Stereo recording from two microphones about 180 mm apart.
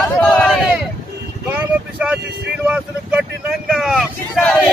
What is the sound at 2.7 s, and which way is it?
Speech, 5° right (ahead or behind).